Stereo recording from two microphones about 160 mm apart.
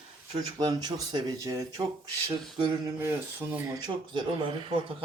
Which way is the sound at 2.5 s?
20° right (ahead or behind).